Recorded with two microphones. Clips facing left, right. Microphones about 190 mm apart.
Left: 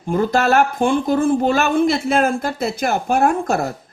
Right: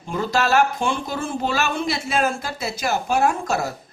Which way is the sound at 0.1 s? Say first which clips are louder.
Left 4 dB; 55° left (ahead or behind).